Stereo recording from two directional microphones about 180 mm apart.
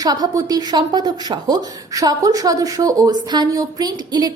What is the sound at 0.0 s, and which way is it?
A woman's voice, 20° right (ahead or behind).